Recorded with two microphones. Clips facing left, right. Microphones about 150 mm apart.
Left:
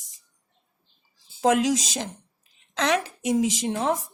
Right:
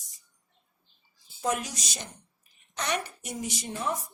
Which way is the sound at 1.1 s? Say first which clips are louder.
Left 9 dB; 90° left.